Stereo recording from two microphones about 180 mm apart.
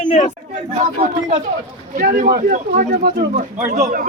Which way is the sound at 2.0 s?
50° right (ahead or behind).